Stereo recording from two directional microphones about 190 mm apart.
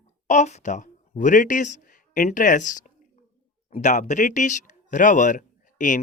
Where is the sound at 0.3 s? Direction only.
40° left (ahead or behind).